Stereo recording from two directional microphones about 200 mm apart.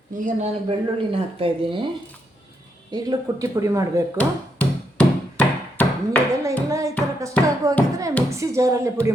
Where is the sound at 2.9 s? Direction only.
20° right (ahead or behind).